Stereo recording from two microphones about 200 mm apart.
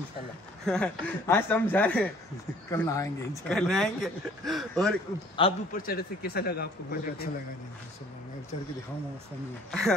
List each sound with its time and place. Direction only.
0.7 s speech: 10° left (ahead or behind)
3.4 s speech: 5° left (ahead or behind)
5.7 s a man's voice: 45° left (ahead or behind)
9.7 s speech: centre (ahead or behind)